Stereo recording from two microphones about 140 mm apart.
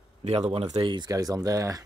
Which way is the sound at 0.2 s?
50° right (ahead or behind).